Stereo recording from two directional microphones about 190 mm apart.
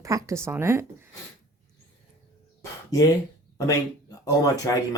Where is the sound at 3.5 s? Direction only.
20° left (ahead or behind).